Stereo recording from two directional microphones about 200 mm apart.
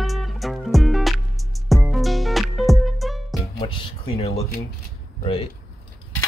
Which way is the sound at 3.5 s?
25° left (ahead or behind).